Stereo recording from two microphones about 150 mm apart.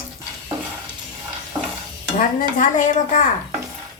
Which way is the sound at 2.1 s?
60° left (ahead or behind).